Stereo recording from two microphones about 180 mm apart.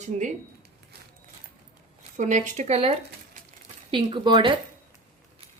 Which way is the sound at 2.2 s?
40° right (ahead or behind).